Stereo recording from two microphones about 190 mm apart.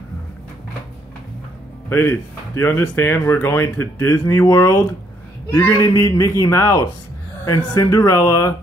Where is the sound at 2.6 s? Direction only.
10° left (ahead or behind).